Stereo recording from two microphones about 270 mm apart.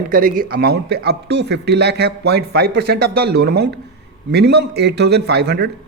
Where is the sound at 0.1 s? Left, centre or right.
Right.